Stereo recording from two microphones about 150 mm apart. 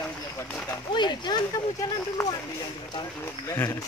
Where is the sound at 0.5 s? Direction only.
10° left (ahead or behind).